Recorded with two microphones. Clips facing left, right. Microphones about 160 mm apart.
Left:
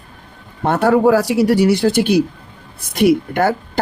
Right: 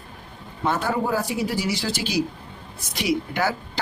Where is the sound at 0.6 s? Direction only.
65° left (ahead or behind).